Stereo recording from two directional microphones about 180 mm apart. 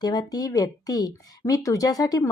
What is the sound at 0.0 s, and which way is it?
Speech, 20° left (ahead or behind).